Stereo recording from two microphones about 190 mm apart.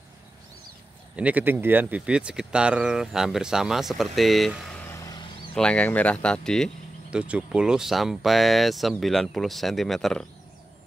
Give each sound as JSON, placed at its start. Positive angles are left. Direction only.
{"t": 1.1, "sound": "speech", "side_deg": -5}
{"t": 4.8, "sound": "vehicle", "side_deg": 15}
{"t": 5.5, "sound": "speech", "side_deg": 5}